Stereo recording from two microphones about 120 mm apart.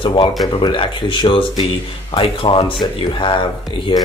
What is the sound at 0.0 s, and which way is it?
Speech, 45° left (ahead or behind).